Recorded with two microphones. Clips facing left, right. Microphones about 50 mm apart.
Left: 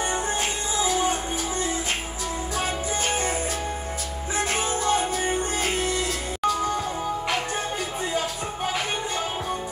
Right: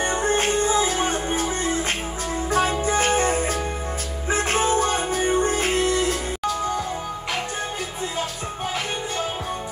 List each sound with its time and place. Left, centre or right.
0.0 s music: right